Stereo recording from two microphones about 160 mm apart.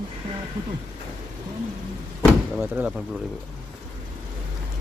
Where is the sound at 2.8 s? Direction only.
15° right (ahead or behind).